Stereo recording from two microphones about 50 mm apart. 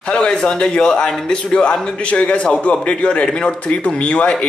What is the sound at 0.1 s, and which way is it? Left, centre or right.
Speech, centre.